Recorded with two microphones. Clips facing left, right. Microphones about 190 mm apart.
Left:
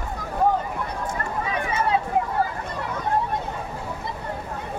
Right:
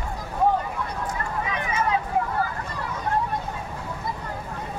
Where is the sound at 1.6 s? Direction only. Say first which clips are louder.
Even; 30° left (ahead or behind).